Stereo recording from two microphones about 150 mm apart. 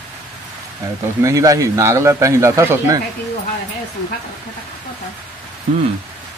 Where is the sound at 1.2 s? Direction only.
20° right (ahead or behind).